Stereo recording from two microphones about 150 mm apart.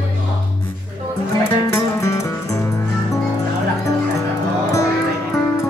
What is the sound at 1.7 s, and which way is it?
Music, 20° left (ahead or behind).